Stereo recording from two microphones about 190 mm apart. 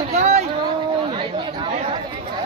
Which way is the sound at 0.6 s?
25° right (ahead or behind).